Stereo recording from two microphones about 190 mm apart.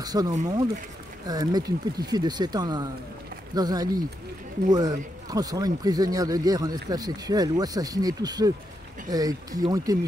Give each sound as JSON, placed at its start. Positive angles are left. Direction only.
{"t": 0.0, "sound": "speech", "side_deg": -20}